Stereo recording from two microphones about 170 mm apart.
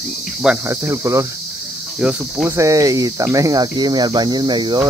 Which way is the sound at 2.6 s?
20° right (ahead or behind).